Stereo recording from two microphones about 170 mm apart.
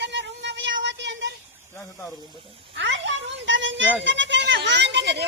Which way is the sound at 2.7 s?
90° right.